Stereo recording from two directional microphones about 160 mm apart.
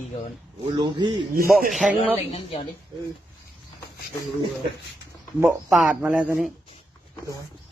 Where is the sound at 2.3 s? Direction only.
40° left (ahead or behind).